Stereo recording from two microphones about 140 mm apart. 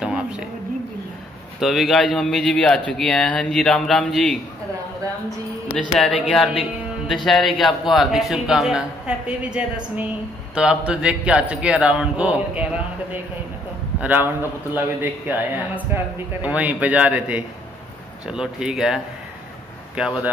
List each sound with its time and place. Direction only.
0.0 s a sound: 5° right (ahead or behind)
1.6 s a man's voice: centre (ahead or behind)
6.3 s a man's voice: centre (ahead or behind)
20.0 s a man's voice: 5° right (ahead or behind)